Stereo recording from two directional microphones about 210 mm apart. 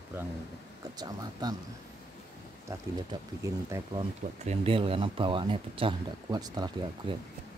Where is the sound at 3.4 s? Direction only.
15° right (ahead or behind).